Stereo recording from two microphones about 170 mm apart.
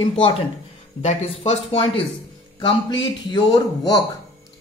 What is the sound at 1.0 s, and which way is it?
A man's voice, 40° left (ahead or behind).